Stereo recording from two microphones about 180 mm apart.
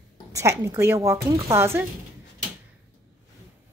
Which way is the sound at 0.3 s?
15° right (ahead or behind).